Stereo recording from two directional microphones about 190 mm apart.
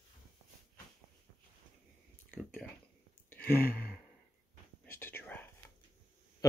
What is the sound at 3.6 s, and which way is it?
Gasp, 55° left (ahead or behind).